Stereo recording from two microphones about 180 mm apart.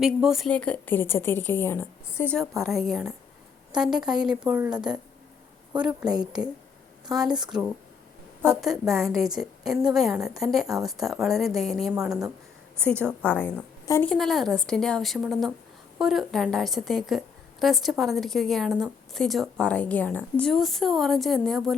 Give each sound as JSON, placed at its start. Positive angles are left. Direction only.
{"t": 0.0, "sound": "a woman's voice", "side_deg": -5}
{"t": 5.7, "sound": "a woman's voice", "side_deg": -10}
{"t": 6.1, "sound": "speech", "side_deg": -20}
{"t": 8.6, "sound": "a woman's voice", "side_deg": 0}
{"t": 14.1, "sound": "a woman's voice", "side_deg": 0}